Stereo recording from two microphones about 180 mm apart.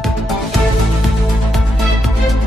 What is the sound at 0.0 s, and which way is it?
Music, centre (ahead or behind).